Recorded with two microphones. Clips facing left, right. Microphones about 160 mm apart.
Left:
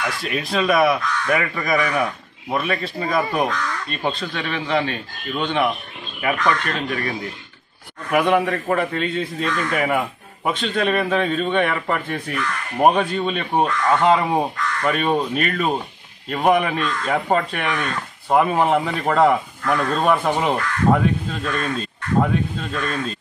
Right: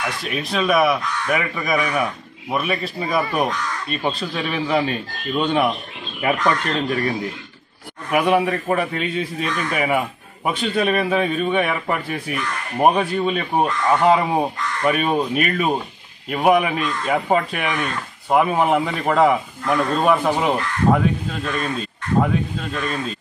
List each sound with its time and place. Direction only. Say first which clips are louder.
0.2 s a man's voice: left 1 dB; centre (ahead or behind)
6.2 s speech: right 1 dB; 30° right (ahead or behind)
8.1 s a man's voice: even; 15° right (ahead or behind)